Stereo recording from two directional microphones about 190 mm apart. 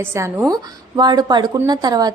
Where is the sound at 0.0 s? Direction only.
15° right (ahead or behind).